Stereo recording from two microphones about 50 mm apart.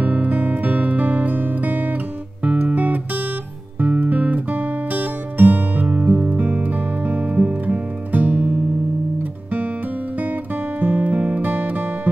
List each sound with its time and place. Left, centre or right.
0.0 s music: right
10.1 s music: right